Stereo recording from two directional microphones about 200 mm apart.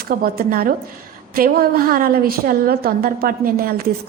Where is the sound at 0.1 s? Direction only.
45° right (ahead or behind).